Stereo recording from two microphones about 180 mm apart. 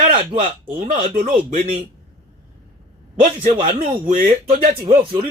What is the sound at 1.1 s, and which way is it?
Speech, 45° right (ahead or behind).